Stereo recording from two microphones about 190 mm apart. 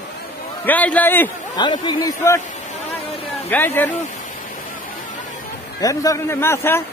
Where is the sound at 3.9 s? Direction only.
40° left (ahead or behind).